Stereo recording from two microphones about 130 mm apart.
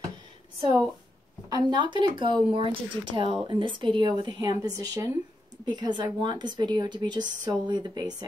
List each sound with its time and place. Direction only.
1.5 s speech: 35° right (ahead or behind)